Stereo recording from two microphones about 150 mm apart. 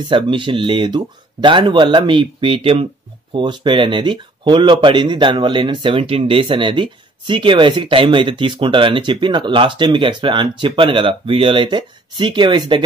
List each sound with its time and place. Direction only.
0.0 s speech: 35° right (ahead or behind)